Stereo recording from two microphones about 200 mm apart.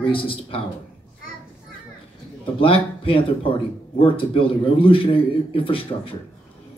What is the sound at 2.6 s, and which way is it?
A man's voice, 25° left (ahead or behind).